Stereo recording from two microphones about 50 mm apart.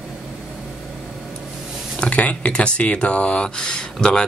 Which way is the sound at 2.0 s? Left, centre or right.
Left.